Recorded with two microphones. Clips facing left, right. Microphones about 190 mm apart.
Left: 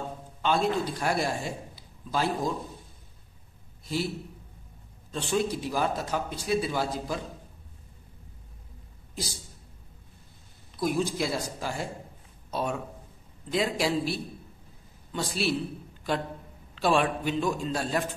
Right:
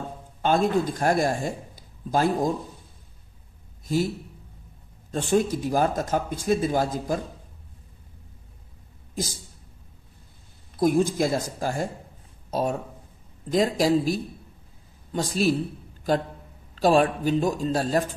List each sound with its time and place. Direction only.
0.4 s a man's voice: 45° right (ahead or behind)
3.8 s a man's voice: 45° right (ahead or behind)
5.1 s speech: 45° right (ahead or behind)
9.1 s speech: 45° right (ahead or behind)
10.8 s a man's voice: 50° right (ahead or behind)